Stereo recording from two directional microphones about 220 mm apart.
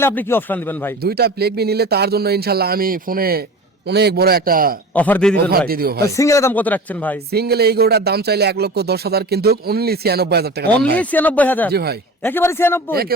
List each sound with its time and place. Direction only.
0.0 s speech: 10° left (ahead or behind)
1.0 s speech: 45° right (ahead or behind)
4.9 s speech: 5° left (ahead or behind)
5.4 s speech: 45° right (ahead or behind)
6.1 s speech: 15° left (ahead or behind)
7.3 s speech: 45° right (ahead or behind)
11.0 s speech: 5° left (ahead or behind)
11.7 s speech: 45° right (ahead or behind)
12.2 s speech: 10° left (ahead or behind)
12.9 s speech: 45° right (ahead or behind)